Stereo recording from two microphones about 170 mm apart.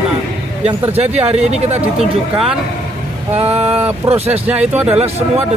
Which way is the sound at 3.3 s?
40° right (ahead or behind).